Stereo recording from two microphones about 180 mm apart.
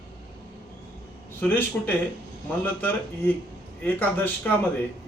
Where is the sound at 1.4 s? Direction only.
10° left (ahead or behind).